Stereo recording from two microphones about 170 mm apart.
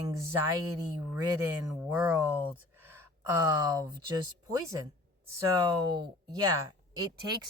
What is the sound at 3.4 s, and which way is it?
Speech, 20° right (ahead or behind).